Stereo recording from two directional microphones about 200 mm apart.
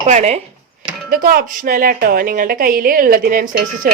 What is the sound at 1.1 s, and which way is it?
Speech, 45° right (ahead or behind).